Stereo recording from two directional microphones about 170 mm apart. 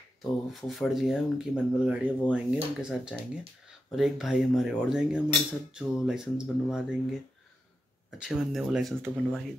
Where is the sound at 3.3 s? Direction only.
5° right (ahead or behind).